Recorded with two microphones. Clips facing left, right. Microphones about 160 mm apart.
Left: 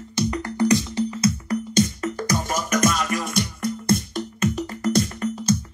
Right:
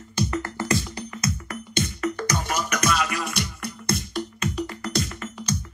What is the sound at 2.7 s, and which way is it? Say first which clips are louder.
Music: left 5 dB; 45° left (ahead or behind).